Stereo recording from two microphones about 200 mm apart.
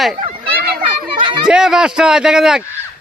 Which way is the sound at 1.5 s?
5° right (ahead or behind).